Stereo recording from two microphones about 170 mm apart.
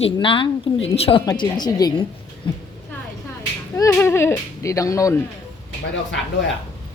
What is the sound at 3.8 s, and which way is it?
Speech, 15° left (ahead or behind).